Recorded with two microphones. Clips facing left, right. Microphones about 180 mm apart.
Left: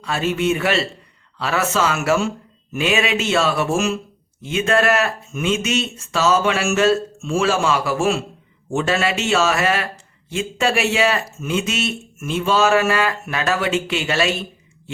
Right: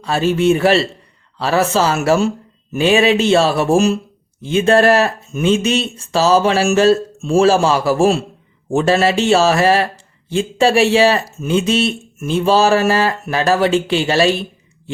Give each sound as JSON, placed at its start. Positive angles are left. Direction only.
{"t": 0.0, "sound": "a man's voice", "side_deg": -35}